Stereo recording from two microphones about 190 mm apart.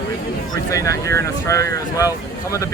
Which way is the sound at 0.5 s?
15° left (ahead or behind).